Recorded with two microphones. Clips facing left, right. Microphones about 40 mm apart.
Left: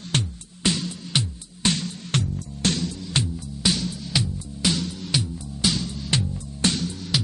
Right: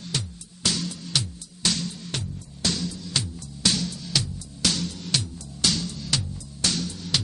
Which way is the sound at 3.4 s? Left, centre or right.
Centre.